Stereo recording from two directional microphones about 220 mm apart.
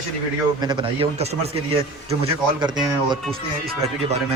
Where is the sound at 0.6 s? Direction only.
20° right (ahead or behind).